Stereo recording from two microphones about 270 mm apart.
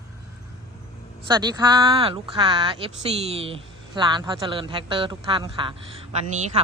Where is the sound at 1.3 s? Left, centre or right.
Centre.